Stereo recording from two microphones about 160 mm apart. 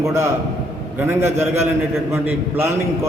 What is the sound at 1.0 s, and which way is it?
A man's voice, 15° right (ahead or behind).